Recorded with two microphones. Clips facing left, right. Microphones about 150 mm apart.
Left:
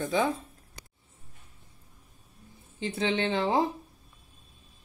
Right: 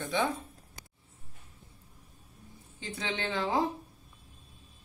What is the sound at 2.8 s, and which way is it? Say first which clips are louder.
Speech: left 7 dB; 25° left (ahead or behind).